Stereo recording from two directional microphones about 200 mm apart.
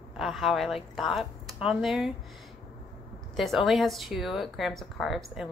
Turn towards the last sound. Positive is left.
turn(degrees=0)  # may be behind; listen again after turning